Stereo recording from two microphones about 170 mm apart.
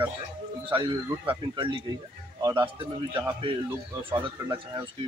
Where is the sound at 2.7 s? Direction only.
30° right (ahead or behind).